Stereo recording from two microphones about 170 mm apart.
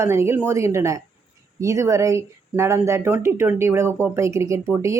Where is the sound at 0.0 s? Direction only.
15° right (ahead or behind).